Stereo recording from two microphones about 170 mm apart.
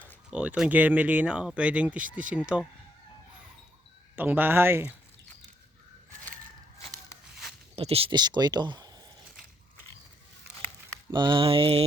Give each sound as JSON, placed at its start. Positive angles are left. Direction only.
{"t": 0.3, "sound": "speech", "side_deg": -5}
{"t": 4.1, "sound": "speech", "side_deg": -10}
{"t": 7.8, "sound": "speech", "side_deg": -35}
{"t": 11.1, "sound": "mantra", "side_deg": -25}